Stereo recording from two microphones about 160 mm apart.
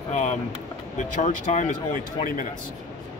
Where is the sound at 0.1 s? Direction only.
45° left (ahead or behind).